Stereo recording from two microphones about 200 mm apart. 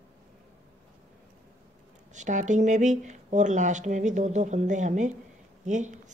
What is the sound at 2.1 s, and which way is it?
A woman's voice, 35° right (ahead or behind).